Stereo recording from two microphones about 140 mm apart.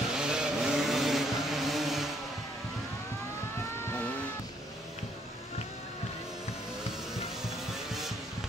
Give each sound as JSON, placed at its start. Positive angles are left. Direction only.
{"t": 0.1, "sound": "vehicle", "side_deg": -5}
{"t": 3.5, "sound": "vehicle", "side_deg": 20}